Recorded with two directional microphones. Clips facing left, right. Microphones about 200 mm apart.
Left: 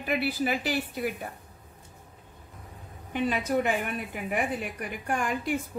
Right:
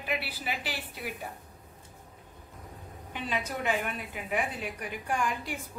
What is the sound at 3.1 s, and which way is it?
A woman's voice, 50° left (ahead or behind).